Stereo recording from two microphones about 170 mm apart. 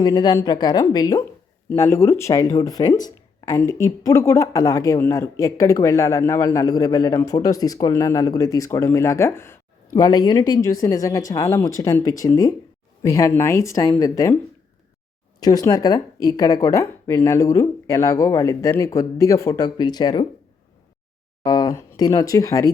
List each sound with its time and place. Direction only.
0.0 s speech: 20° left (ahead or behind)
15.4 s speech: 20° left (ahead or behind)
21.4 s speech: 25° left (ahead or behind)